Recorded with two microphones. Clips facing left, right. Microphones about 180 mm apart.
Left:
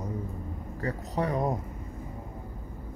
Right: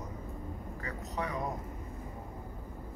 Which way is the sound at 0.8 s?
35° left (ahead or behind).